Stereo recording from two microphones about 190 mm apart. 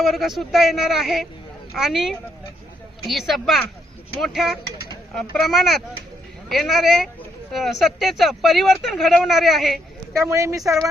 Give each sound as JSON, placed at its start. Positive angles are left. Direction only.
{"t": 0.0, "sound": "speech", "side_deg": 0}
{"t": 10.2, "sound": "speech", "side_deg": -15}